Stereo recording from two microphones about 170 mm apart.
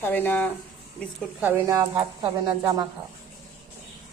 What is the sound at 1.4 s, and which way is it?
Speech, 15° right (ahead or behind).